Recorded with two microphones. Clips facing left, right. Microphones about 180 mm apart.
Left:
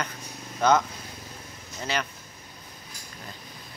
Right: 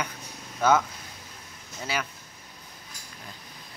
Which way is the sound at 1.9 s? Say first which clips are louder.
Left 2 dB; 10° right (ahead or behind).